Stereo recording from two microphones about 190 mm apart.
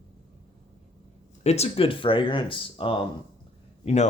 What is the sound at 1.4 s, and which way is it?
Speech, 35° left (ahead or behind).